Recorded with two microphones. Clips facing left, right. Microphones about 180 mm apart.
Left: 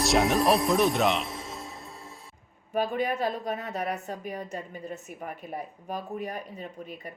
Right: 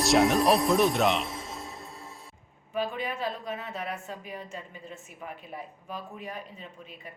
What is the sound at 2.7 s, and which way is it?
A woman's voice, 40° left (ahead or behind).